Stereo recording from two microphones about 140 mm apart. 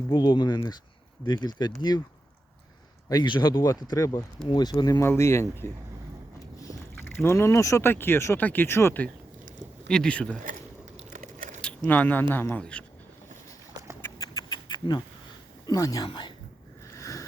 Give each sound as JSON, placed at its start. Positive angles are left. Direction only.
{"t": 0.1, "sound": "speech", "side_deg": 30}
{"t": 3.1, "sound": "speech", "side_deg": 30}
{"t": 6.9, "sound": "speech", "side_deg": 15}
{"t": 10.4, "sound": "biting", "side_deg": -65}
{"t": 11.6, "sound": "speech", "side_deg": 10}
{"t": 14.2, "sound": "rodents", "side_deg": 30}
{"t": 15.6, "sound": "speech", "side_deg": 25}
{"t": 16.9, "sound": "boat", "side_deg": 20}